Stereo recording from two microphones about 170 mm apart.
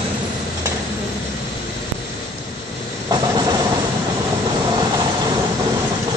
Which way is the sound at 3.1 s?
20° right (ahead or behind).